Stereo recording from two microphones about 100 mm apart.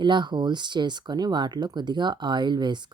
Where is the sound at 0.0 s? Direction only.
50° right (ahead or behind).